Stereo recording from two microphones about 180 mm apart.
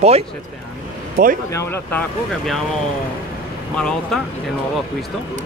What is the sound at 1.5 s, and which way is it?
Speech, 15° left (ahead or behind).